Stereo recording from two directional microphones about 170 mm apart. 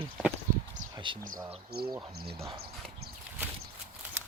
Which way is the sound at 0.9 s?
30° right (ahead or behind).